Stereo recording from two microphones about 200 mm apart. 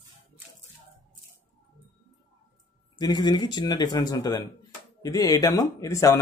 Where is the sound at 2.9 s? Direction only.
20° left (ahead or behind).